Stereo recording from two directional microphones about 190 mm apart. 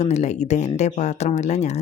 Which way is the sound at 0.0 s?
35° left (ahead or behind).